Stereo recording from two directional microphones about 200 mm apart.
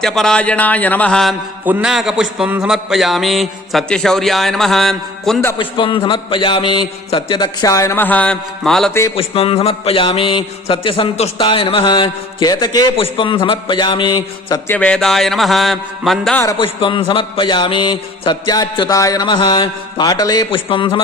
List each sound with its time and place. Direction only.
0.0 s a man's voice: 5° left (ahead or behind)
5.5 s a man's voice: 25° left (ahead or behind); by 8.9 s centre (ahead or behind)
8.9 s a man's voice: 15° left (ahead or behind)
9.1 s a man's voice: 30° left (ahead or behind)
14.7 s a man's voice: 5° left (ahead or behind)
16.4 s a man's voice: 20° left (ahead or behind)